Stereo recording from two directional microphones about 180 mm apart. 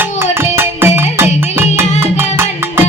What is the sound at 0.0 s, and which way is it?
Music, 15° right (ahead or behind).